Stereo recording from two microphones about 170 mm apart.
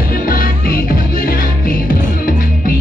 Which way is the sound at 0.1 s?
55° left (ahead or behind).